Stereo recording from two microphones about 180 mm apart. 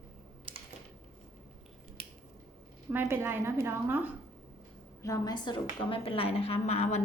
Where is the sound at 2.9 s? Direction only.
10° right (ahead or behind).